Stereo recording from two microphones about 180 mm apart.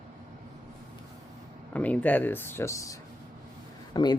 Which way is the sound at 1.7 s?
10° left (ahead or behind).